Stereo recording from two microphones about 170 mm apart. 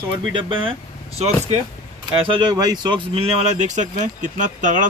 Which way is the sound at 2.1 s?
30° right (ahead or behind).